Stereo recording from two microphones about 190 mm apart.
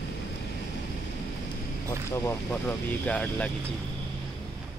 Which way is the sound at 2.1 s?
15° left (ahead or behind).